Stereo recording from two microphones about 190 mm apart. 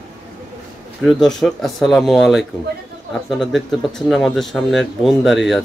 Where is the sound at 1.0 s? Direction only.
Centre (ahead or behind).